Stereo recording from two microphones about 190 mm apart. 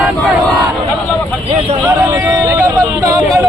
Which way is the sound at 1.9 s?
15° right (ahead or behind).